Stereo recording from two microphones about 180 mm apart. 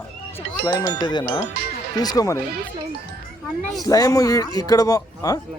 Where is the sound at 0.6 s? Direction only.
25° left (ahead or behind).